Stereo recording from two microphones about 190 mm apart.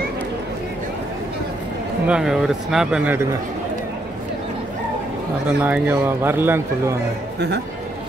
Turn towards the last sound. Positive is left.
turn(degrees=-10)  # may be behind; listen again after turning